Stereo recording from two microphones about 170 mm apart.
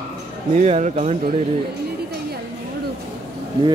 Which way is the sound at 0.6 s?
45° right (ahead or behind).